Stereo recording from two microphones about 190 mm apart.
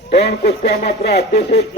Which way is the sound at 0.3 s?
60° left (ahead or behind).